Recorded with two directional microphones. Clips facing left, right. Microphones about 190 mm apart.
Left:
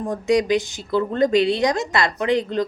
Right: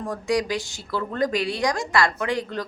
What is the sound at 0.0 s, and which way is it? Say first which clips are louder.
Speech: left 5 dB; 20° left (ahead or behind).